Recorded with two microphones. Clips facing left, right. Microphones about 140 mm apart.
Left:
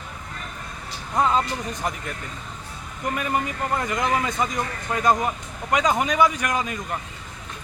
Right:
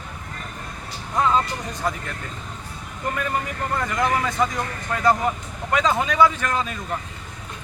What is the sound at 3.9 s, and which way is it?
Speech, 20° left (ahead or behind).